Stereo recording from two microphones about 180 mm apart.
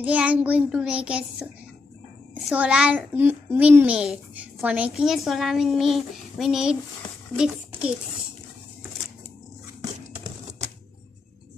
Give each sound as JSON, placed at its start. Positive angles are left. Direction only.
{"t": 0.0, "sound": "child singing", "side_deg": -10}
{"t": 2.5, "sound": "a child's voice", "side_deg": -5}